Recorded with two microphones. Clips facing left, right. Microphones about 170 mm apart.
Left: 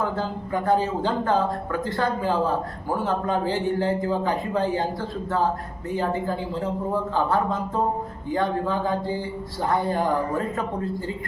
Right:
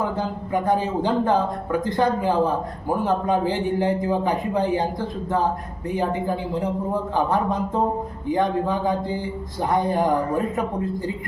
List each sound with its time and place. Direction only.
0.0 s speech: 15° right (ahead or behind)
5.9 s speech: 15° right (ahead or behind)